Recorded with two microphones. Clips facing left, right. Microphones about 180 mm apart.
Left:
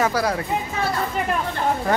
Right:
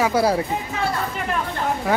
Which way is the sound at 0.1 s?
30° right (ahead or behind).